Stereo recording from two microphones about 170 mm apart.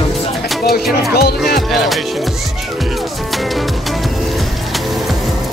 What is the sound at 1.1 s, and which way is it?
Speech, 70° left (ahead or behind).